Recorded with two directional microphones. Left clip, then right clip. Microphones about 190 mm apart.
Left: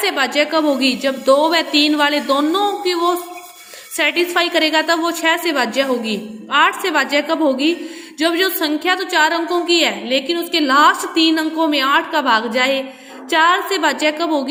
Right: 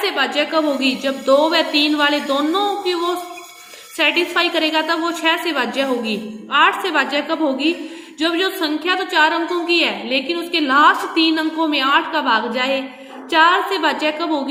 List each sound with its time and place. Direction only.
0.0 s a woman's voice: 35° left (ahead or behind)